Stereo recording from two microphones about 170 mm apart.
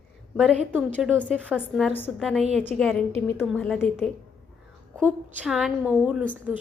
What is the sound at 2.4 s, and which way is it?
Speech, 40° right (ahead or behind).